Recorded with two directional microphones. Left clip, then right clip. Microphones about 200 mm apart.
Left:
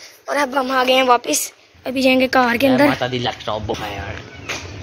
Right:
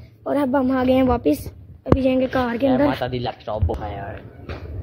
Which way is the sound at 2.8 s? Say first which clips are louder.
Left 4 dB; 40° left (ahead or behind).